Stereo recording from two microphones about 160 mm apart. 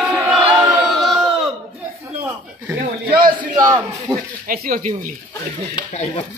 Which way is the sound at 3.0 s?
60° right (ahead or behind).